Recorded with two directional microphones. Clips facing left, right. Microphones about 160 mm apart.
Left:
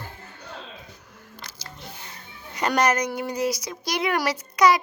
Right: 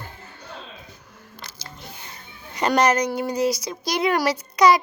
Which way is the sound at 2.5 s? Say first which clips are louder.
Right 3 dB; 35° right (ahead or behind).